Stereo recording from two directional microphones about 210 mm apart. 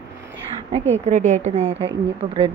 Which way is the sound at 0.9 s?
35° right (ahead or behind).